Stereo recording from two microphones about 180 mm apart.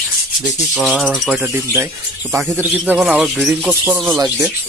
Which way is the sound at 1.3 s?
10° right (ahead or behind).